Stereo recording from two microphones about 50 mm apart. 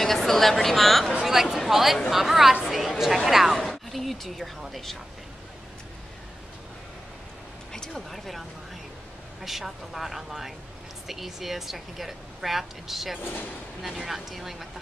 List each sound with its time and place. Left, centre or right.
0.0 s a woman's voice: centre
7.7 s a woman's voice: centre
13.2 s speech: left
13.8 s a woman's voice: centre